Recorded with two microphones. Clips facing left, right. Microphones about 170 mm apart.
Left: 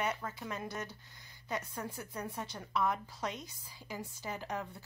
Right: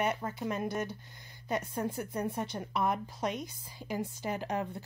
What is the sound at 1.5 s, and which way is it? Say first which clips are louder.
Speech: right 6 dB; 20° right (ahead or behind).